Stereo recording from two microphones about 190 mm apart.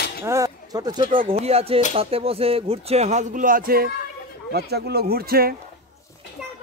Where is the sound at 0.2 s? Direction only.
15° right (ahead or behind).